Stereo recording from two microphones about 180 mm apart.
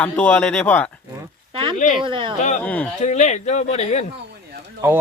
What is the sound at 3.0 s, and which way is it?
Speech, 40° left (ahead or behind).